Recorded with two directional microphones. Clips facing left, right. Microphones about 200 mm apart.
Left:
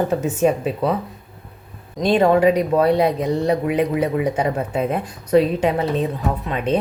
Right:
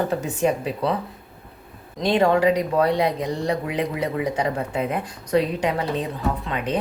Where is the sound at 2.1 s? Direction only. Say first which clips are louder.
Left 3 dB; 20° left (ahead or behind).